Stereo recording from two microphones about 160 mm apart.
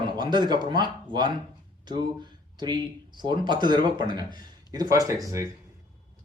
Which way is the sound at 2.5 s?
25° right (ahead or behind).